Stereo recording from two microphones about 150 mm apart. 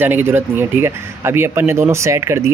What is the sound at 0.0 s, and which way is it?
Speech, 15° right (ahead or behind).